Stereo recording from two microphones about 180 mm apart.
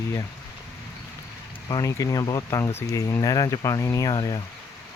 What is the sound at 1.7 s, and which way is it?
Speech, 20° left (ahead or behind).